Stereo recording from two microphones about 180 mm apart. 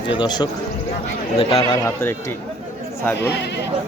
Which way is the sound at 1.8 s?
15° left (ahead or behind).